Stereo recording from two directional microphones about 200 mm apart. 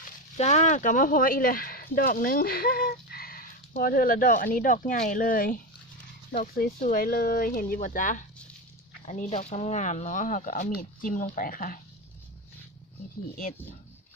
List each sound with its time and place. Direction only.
0.3 s speech: 35° left (ahead or behind)